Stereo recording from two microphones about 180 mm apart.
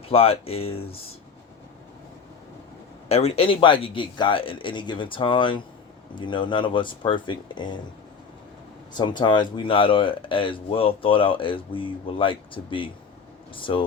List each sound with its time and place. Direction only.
0.1 s speech: 35° left (ahead or behind)
3.1 s speech: 35° left (ahead or behind)
9.0 s speech: 25° left (ahead or behind)